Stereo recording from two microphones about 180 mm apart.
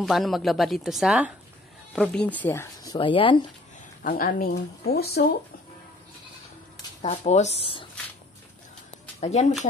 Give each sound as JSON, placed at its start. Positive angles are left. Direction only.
{"t": 0.0, "sound": "a woman's voice", "side_deg": 0}
{"t": 2.0, "sound": "speech", "side_deg": 5}
{"t": 4.0, "sound": "speech", "side_deg": 55}
{"t": 7.0, "sound": "speech", "side_deg": 40}
{"t": 9.2, "sound": "speech", "side_deg": 40}